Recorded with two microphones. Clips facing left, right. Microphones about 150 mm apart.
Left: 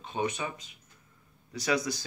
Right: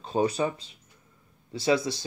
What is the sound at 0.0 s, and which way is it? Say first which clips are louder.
Speech: right 7 dB; 35° right (ahead or behind).